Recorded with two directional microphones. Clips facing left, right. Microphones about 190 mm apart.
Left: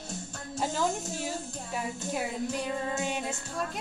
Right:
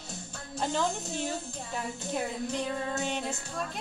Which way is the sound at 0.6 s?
5° left (ahead or behind).